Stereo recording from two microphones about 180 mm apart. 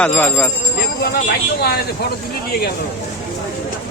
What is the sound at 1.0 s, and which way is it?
Speech, 60° left (ahead or behind).